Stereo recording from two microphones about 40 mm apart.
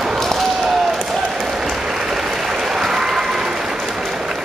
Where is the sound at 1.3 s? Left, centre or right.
Centre.